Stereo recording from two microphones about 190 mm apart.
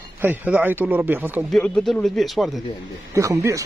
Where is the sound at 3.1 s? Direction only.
15° right (ahead or behind).